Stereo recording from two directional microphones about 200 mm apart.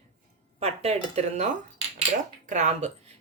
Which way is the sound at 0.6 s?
30° right (ahead or behind).